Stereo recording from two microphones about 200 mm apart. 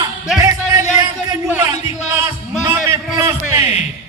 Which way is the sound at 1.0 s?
15° right (ahead or behind).